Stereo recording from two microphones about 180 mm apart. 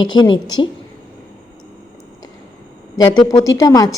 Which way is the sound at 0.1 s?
25° left (ahead or behind).